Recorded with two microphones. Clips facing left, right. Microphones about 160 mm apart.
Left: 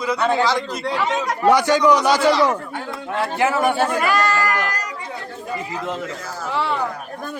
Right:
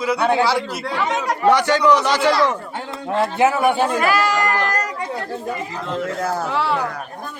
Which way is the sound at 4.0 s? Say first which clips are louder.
Right 1 dB; 5° right (ahead or behind).